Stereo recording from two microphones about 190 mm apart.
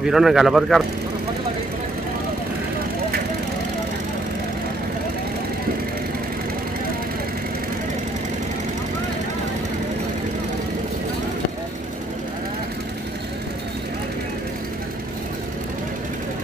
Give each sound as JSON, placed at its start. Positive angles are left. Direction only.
{"t": 0.0, "sound": "speech", "side_deg": 0}